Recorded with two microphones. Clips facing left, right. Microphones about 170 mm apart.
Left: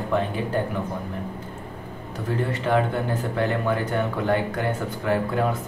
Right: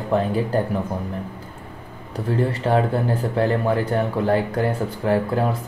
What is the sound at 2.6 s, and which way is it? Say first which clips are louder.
Speech: right 2 dB; 35° right (ahead or behind).